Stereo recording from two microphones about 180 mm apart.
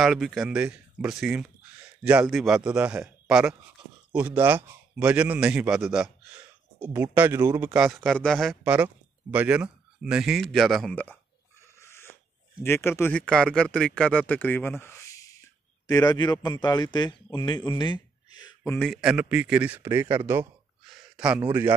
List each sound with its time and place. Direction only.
0.0 s a man's voice: centre (ahead or behind)
11.6 s rodents: 15° left (ahead or behind)
12.6 s a man's voice: 15° left (ahead or behind)
18.8 s a man's voice: centre (ahead or behind)